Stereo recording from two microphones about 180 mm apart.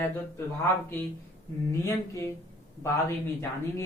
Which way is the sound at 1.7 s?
15° left (ahead or behind).